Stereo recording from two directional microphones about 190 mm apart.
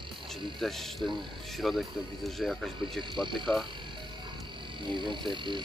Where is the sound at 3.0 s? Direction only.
25° right (ahead or behind).